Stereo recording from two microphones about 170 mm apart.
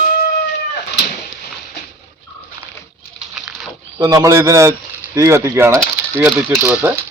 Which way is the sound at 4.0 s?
20° right (ahead or behind).